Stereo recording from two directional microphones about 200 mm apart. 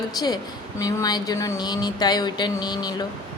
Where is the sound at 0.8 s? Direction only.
20° left (ahead or behind).